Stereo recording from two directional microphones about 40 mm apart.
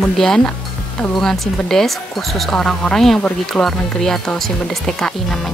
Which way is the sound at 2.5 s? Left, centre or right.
Centre.